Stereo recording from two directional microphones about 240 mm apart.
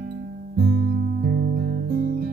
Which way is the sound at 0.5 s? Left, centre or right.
Right.